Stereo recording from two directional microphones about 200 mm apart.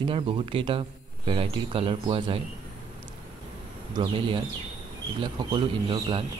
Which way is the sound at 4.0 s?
20° right (ahead or behind).